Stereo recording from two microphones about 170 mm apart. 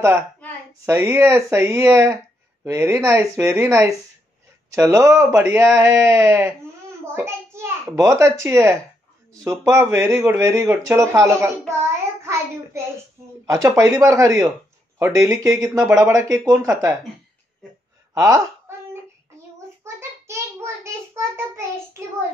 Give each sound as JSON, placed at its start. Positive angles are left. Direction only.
{"t": 0.8, "sound": "a child's voice", "side_deg": -15}
{"t": 18.1, "sound": "speech", "side_deg": -20}
{"t": 19.8, "sound": "child singing", "side_deg": -15}